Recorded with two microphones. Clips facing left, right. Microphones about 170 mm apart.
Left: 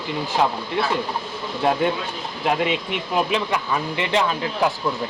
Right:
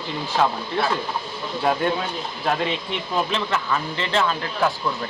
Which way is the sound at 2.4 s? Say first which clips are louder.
Left 3 dB; 15° left (ahead or behind).